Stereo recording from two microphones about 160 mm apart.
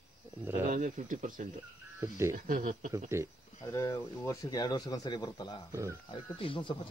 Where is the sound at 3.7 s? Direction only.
20° left (ahead or behind).